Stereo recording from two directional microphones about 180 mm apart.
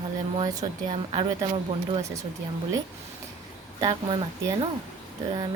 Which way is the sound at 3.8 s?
20° right (ahead or behind).